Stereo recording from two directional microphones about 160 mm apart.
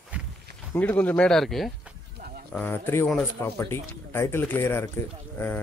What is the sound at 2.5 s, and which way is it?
Speech, 10° left (ahead or behind).